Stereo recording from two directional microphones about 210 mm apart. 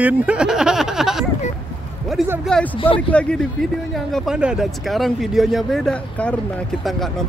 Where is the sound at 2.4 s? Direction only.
5° left (ahead or behind).